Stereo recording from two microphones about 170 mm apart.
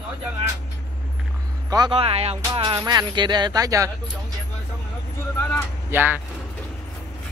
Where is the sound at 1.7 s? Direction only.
25° right (ahead or behind).